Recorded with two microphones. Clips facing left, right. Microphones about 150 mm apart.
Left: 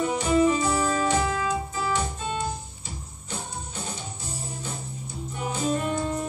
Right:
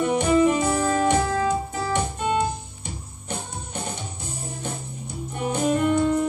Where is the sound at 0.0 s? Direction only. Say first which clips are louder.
Right 3 dB; 60° right (ahead or behind).